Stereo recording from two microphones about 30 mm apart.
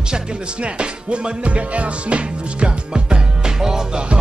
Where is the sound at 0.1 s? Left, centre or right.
Right.